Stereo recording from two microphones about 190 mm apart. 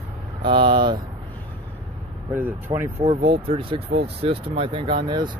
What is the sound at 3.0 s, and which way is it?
Speech, 30° right (ahead or behind).